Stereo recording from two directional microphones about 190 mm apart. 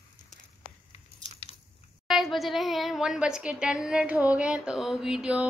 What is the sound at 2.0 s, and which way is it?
A woman's voice, centre (ahead or behind).